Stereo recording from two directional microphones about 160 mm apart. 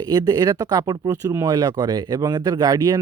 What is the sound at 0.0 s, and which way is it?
Speech, 25° right (ahead or behind).